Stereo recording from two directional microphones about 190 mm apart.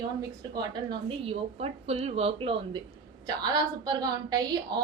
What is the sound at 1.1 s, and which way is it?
A woman's voice, 30° right (ahead or behind).